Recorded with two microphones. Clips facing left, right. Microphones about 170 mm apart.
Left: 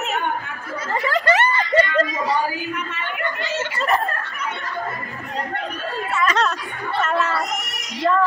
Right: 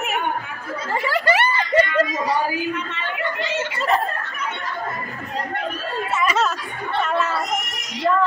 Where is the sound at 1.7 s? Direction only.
10° right (ahead or behind).